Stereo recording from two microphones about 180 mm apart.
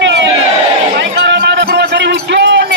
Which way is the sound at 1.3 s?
70° right (ahead or behind).